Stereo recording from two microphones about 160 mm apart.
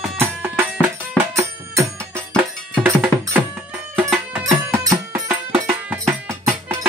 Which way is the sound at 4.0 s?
10° right (ahead or behind).